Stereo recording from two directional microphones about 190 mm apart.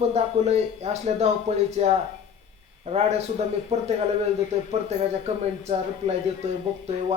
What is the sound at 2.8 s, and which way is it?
A man's voice, 35° right (ahead or behind).